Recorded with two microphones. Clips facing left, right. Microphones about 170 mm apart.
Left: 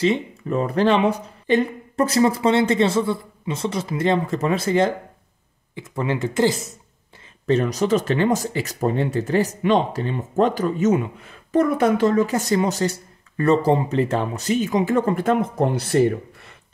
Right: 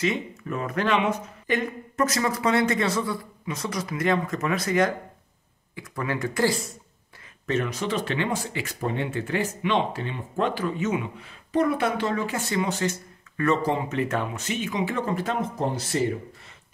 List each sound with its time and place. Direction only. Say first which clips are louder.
0.0 s speech: left 6 dB; 30° left (ahead or behind)
7.4 s speech: left 7 dB; 35° left (ahead or behind); by 16.2 s 60° left (ahead or behind)